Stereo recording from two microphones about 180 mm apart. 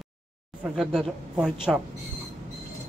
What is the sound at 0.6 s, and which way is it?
Speech, 5° right (ahead or behind).